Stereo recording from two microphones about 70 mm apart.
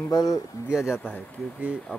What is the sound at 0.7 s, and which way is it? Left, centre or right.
Speech, centre.